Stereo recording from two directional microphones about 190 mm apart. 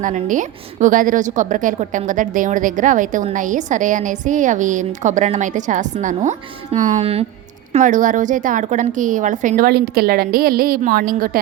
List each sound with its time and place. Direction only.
0.0 s a woman's voice: 40° right (ahead or behind)